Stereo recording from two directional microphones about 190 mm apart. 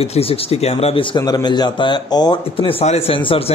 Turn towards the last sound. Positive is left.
turn(degrees=30)  # may be behind; listen again after turning